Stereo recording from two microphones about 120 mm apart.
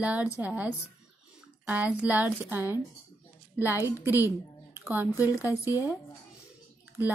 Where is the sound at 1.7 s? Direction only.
15° right (ahead or behind).